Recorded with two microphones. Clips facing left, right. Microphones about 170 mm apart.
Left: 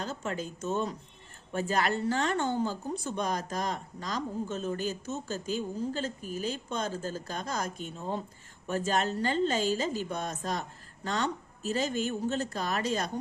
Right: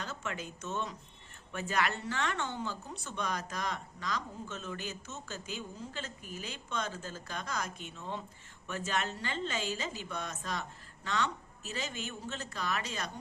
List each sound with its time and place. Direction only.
0.0 s a woman's voice: 35° left (ahead or behind)